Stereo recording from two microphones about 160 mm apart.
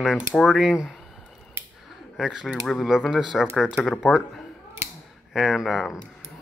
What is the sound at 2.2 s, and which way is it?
Speech, 5° right (ahead or behind).